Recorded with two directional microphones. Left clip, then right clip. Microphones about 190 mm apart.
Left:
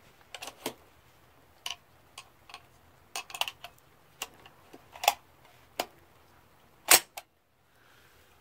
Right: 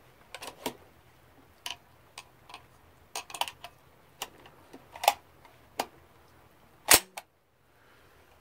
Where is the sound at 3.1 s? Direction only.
5° right (ahead or behind).